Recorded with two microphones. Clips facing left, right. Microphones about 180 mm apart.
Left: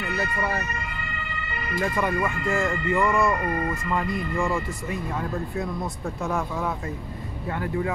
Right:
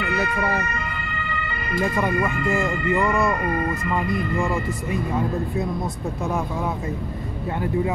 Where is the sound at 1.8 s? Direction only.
15° right (ahead or behind).